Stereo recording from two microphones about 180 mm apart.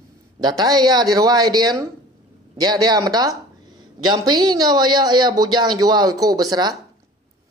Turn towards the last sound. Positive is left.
turn(degrees=-20)  # may be behind; listen again after turning